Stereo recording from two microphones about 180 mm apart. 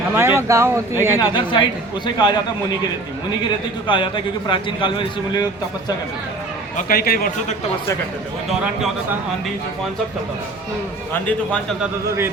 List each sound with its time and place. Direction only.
0.2 s speech: 15° right (ahead or behind)
1.2 s a man's voice: 25° left (ahead or behind)
3.8 s a man's voice: 25° left (ahead or behind)
6.7 s a man's voice: 55° left (ahead or behind)
8.4 s a man's voice: centre (ahead or behind)
11.1 s a man's voice: 5° left (ahead or behind)